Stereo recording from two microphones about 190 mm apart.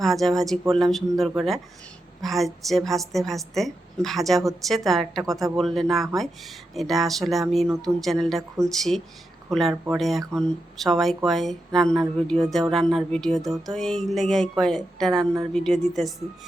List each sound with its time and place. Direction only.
0.0 s speech: centre (ahead or behind)
5.2 s speech: 15° right (ahead or behind)
5.5 s speech: centre (ahead or behind)